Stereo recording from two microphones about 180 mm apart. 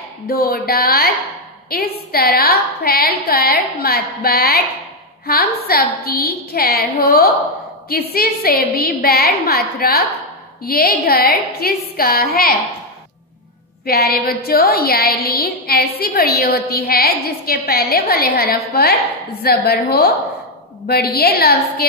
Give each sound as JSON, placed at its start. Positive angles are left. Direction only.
{"t": 0.3, "sound": "a woman's voice", "side_deg": 55}
{"t": 13.8, "sound": "a woman's voice", "side_deg": 55}